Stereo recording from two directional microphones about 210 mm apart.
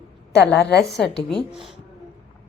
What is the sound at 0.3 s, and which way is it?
Speech, 50° left (ahead or behind).